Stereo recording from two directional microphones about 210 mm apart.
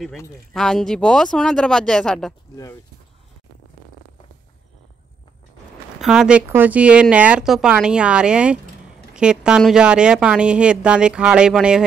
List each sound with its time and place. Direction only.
0.5 s speech: centre (ahead or behind)
2.5 s speech: 15° left (ahead or behind)
5.9 s speech: 5° right (ahead or behind)